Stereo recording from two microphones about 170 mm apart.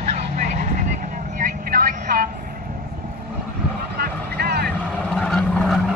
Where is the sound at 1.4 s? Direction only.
55° right (ahead or behind).